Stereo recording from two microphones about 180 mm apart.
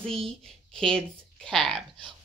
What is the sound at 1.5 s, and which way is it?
Speech, centre (ahead or behind).